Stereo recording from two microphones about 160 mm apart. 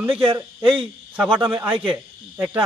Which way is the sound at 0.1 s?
35° right (ahead or behind).